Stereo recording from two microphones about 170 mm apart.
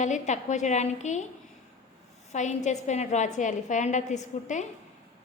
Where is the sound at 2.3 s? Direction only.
45° left (ahead or behind).